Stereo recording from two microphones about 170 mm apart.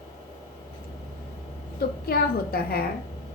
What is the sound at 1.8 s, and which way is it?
A woman's voice, 65° left (ahead or behind).